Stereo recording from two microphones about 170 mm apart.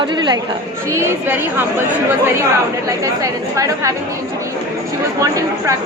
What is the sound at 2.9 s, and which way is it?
A woman's voice, 20° right (ahead or behind).